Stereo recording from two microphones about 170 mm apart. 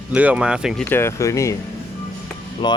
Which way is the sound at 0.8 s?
15° left (ahead or behind).